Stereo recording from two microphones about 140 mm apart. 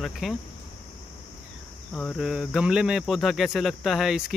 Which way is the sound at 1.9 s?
5° left (ahead or behind).